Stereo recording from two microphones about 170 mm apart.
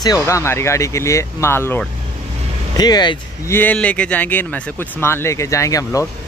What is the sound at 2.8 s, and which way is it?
Speech, 25° left (ahead or behind).